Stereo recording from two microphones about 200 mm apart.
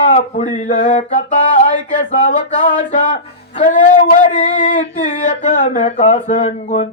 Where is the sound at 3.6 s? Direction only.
40° left (ahead or behind).